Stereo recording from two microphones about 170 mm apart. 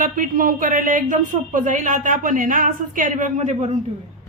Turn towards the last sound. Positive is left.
turn(degrees=-40)  # may be behind; listen again after turning